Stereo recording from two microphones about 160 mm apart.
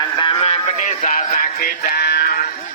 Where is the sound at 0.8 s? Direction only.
50° left (ahead or behind).